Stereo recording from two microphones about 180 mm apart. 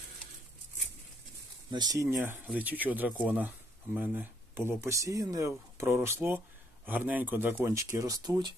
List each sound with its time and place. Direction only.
1.7 s speech: 20° right (ahead or behind)